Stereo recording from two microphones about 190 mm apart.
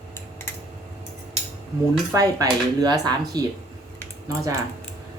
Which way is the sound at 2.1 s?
20° right (ahead or behind).